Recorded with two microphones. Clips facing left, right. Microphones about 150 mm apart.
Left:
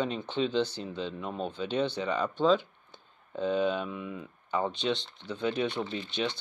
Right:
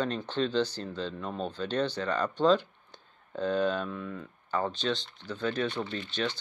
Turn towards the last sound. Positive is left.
turn(degrees=10)  # may be behind; listen again after turning